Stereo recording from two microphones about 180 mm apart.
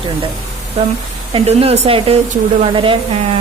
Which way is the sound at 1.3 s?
35° right (ahead or behind).